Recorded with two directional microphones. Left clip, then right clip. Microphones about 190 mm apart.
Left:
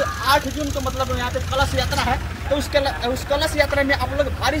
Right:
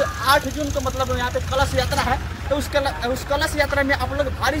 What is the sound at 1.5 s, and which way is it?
A man's voice, 5° right (ahead or behind).